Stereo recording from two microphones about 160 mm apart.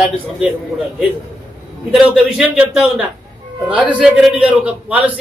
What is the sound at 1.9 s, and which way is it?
A man's voice, 5° right (ahead or behind).